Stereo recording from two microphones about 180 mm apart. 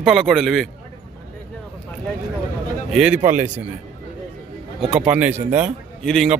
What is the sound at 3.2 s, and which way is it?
Speech, 45° right (ahead or behind).